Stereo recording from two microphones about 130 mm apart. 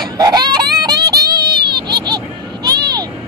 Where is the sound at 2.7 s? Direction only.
30° right (ahead or behind).